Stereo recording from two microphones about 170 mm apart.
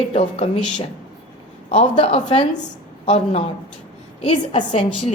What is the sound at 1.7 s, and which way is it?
A woman's voice, 40° left (ahead or behind).